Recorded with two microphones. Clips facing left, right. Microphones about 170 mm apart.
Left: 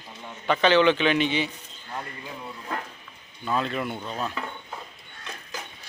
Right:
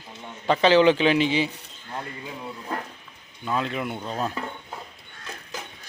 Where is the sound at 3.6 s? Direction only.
15° right (ahead or behind).